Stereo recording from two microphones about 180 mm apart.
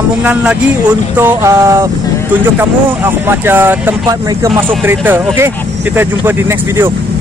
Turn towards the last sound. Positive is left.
turn(degrees=-15)  # may be behind; listen again after turning